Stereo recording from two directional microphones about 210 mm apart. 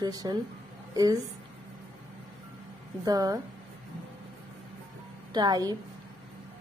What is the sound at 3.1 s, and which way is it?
Speech, 15° right (ahead or behind).